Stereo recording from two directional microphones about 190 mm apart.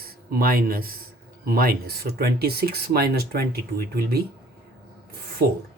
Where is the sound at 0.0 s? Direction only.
50° right (ahead or behind).